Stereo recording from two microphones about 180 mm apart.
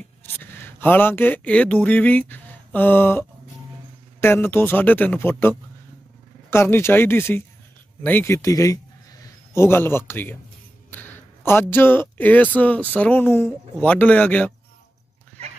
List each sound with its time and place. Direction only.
0.2 s a man's voice: 10° left (ahead or behind)